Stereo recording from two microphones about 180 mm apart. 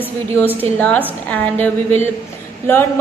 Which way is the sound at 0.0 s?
10° left (ahead or behind).